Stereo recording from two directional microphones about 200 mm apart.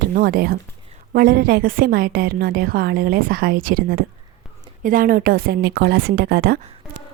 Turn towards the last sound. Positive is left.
turn(degrees=-50)  # may be behind; listen again after turning